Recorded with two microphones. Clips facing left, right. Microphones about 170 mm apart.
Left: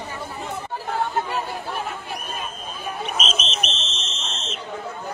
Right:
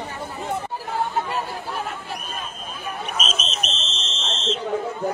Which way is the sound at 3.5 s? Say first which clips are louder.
Left 1 dB; 35° right (ahead or behind).